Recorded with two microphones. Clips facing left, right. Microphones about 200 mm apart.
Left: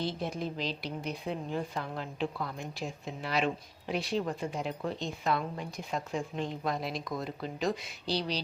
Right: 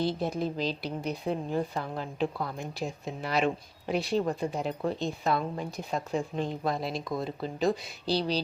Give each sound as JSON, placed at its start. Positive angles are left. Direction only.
{"t": 0.0, "sound": "speech", "side_deg": -35}